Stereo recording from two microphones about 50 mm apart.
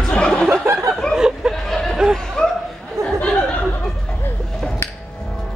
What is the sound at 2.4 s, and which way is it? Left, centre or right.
Laughter, centre.